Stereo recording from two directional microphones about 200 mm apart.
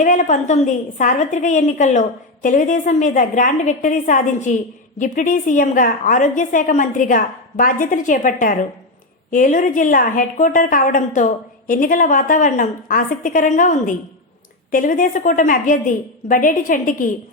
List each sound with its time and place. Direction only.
0.0 s a woman's voice: 40° left (ahead or behind)